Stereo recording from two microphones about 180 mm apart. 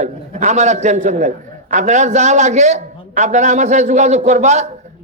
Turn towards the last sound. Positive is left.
turn(degrees=-40)  # may be behind; listen again after turning